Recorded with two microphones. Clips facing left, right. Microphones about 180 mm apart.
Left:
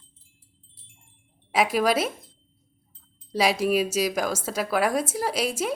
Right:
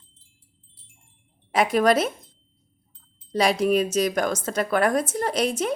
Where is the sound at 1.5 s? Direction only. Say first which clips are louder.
Right 3 dB; 5° left (ahead or behind).